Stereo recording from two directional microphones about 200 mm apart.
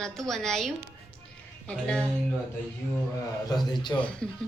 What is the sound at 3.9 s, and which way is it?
Speech, 15° left (ahead or behind).